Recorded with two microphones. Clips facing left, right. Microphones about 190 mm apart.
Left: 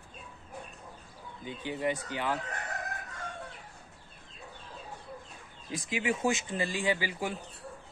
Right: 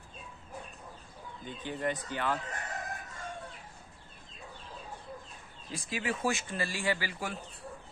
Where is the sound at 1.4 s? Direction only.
10° left (ahead or behind).